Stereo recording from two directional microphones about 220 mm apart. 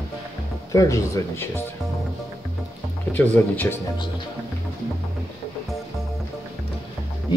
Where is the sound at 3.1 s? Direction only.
10° left (ahead or behind).